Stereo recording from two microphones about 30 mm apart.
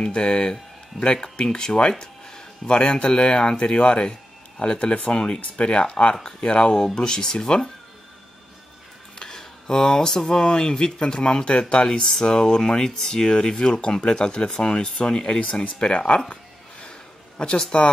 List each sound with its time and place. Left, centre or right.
0.0 s speech: left
7.0 s speech: left
9.2 s speech: left
17.4 s speech: left